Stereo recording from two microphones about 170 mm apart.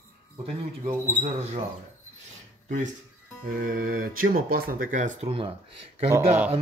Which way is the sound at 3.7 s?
60° right (ahead or behind).